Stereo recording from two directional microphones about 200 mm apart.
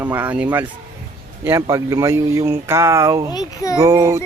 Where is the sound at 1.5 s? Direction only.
15° right (ahead or behind).